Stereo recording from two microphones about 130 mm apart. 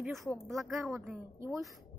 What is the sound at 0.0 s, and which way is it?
Speech, centre (ahead or behind).